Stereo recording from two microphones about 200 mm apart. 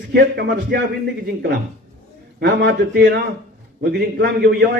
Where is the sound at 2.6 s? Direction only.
55° right (ahead or behind).